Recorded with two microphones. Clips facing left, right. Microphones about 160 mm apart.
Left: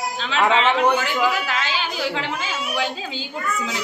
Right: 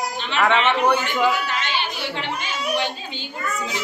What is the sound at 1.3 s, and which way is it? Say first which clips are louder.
Speech: even; 90° left.